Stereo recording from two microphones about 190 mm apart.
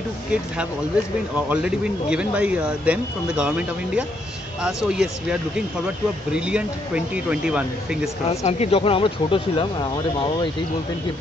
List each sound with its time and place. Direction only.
1.5 s speech: 5° right (ahead or behind)
8.5 s speech: 30° left (ahead or behind)